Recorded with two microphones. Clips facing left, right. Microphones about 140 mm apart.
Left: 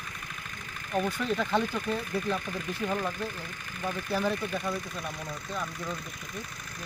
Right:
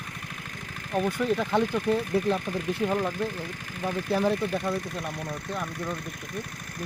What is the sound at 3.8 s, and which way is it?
Speech, 85° right.